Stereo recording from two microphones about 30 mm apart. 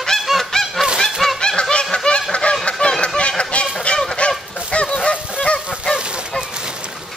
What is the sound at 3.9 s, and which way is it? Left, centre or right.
Goose, left.